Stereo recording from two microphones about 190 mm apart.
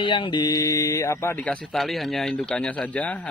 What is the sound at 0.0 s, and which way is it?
A man's voice, 25° left (ahead or behind).